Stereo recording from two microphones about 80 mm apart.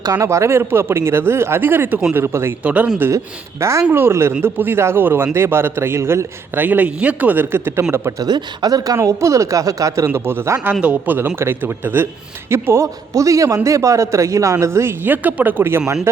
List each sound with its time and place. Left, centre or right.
0.0 s speech: right
0.3 s a man's voice: right
2.6 s speech: centre
3.6 s a man's voice: right
8.2 s speech: right
9.0 s speech: right
10.1 s a man's voice: right
10.6 s a man's voice: centre